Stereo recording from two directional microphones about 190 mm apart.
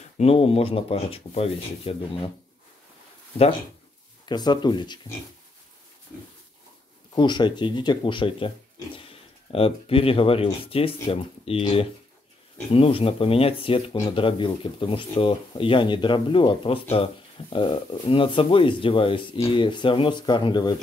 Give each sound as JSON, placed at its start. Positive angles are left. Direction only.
{"t": 0.2, "sound": "speech", "side_deg": 30}
{"t": 4.3, "sound": "speech", "side_deg": 25}
{"t": 7.2, "sound": "speech", "side_deg": 25}